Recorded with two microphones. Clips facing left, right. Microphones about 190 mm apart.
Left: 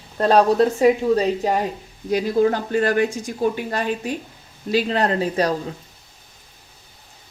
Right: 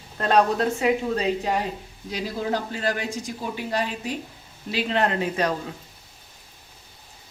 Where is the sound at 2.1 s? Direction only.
50° left (ahead or behind).